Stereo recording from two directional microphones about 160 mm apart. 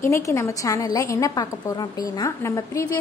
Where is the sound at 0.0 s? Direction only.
15° left (ahead or behind).